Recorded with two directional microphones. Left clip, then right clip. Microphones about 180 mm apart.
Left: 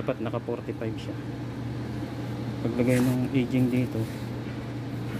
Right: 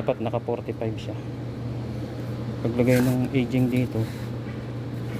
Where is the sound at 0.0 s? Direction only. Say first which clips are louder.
Right 4 dB; 5° right (ahead or behind).